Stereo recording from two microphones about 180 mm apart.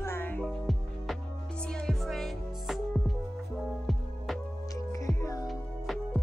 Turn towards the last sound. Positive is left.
turn(degrees=20)  # may be behind; listen again after turning